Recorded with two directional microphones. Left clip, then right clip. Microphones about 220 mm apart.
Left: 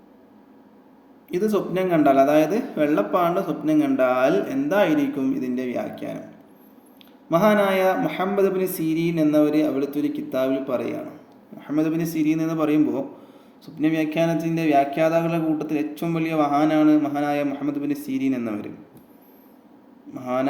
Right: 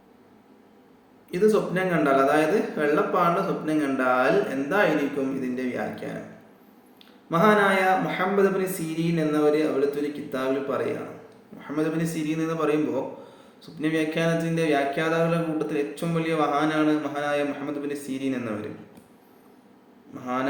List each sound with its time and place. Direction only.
1.5 s mantra: 50° left (ahead or behind)
7.3 s mantra: 50° left (ahead or behind)
20.1 s mantra: 45° left (ahead or behind)